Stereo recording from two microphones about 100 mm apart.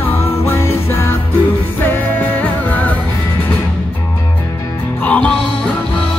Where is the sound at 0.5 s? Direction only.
25° left (ahead or behind).